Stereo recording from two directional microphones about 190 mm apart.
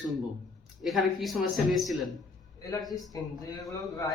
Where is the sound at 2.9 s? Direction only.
20° left (ahead or behind).